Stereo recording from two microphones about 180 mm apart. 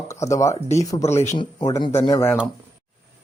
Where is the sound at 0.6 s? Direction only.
40° left (ahead or behind).